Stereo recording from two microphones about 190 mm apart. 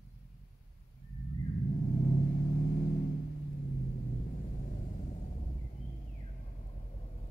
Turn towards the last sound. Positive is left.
turn(degrees=35)  # may be behind; listen again after turning